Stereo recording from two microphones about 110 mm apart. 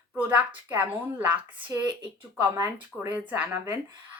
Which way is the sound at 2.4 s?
25° right (ahead or behind).